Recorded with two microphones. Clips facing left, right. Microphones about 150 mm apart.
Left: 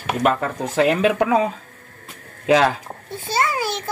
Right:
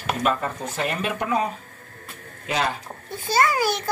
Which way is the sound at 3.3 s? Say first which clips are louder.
Right 1 dB; 25° left (ahead or behind).